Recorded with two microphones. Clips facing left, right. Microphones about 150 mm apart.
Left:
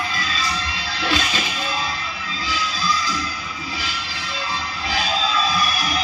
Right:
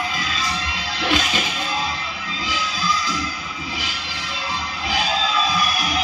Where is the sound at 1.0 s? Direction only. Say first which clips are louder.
Right 1 dB; 15° right (ahead or behind).